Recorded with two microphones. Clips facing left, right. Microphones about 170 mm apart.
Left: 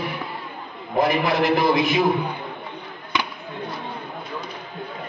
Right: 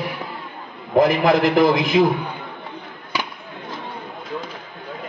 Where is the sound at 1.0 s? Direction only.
90° right.